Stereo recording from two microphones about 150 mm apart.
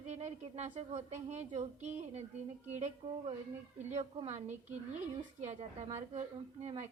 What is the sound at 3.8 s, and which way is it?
Speech, 50° right (ahead or behind).